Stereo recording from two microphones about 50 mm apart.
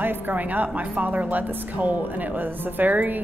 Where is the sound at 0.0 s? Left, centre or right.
Right.